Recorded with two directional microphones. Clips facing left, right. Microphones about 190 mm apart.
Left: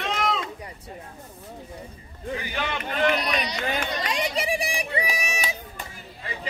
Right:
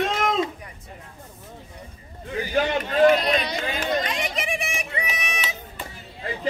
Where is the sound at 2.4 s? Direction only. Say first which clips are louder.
Right 12 dB; 45° right (ahead or behind).